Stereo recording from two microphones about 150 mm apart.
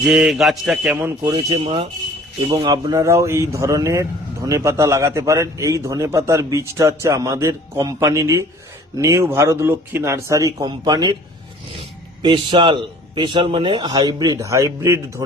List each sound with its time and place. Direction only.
0.0 s a man's voice: 5° right (ahead or behind)
1.3 s speech: 30° right (ahead or behind)
12.2 s speech: 35° right (ahead or behind); by 15.2 s 20° right (ahead or behind)